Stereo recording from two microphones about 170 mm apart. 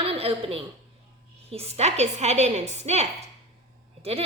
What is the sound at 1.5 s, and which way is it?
A woman's voice, 35° right (ahead or behind).